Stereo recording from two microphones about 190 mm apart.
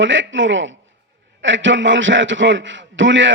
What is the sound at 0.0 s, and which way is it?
A man's voice, 80° right.